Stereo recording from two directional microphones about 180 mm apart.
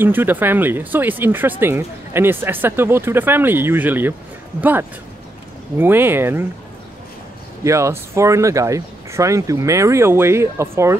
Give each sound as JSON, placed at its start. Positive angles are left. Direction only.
{"t": 0.0, "sound": "speech", "side_deg": -10}
{"t": 7.6, "sound": "speech", "side_deg": -15}